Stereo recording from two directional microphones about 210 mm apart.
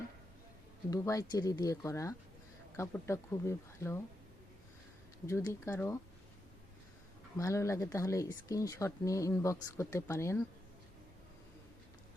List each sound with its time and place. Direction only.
0.9 s speech: 15° left (ahead or behind)
5.2 s speech: 15° left (ahead or behind)
7.3 s speech: 15° left (ahead or behind)